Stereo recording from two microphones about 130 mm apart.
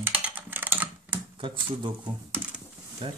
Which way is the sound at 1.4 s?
40° right (ahead or behind).